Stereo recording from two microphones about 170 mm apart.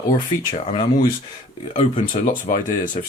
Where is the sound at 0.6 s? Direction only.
30° left (ahead or behind).